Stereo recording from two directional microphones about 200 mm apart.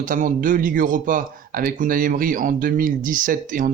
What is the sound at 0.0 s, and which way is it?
Speech, 40° right (ahead or behind).